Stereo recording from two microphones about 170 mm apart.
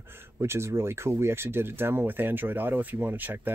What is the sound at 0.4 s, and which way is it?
Speech, 15° right (ahead or behind).